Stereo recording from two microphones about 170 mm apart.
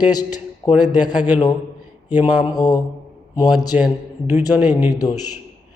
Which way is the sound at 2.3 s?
25° left (ahead or behind).